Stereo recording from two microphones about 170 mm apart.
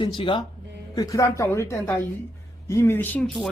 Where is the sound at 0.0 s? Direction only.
30° left (ahead or behind).